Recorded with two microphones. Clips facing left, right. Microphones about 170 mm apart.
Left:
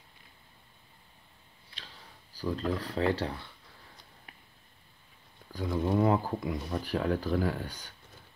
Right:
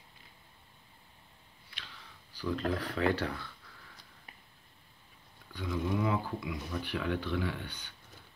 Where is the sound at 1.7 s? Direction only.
35° left (ahead or behind).